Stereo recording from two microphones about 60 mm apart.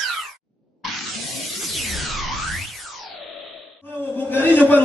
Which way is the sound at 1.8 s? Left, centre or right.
Centre.